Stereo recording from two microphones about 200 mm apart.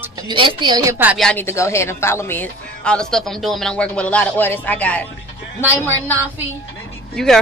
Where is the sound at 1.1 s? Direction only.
5° left (ahead or behind).